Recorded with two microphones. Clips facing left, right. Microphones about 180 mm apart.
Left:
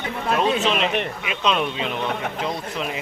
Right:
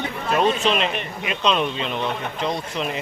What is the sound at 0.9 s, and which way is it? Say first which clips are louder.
Speech: left 4 dB; 65° left (ahead or behind).